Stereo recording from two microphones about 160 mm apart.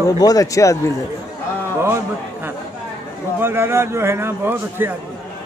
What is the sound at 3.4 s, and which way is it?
Speech, 15° right (ahead or behind).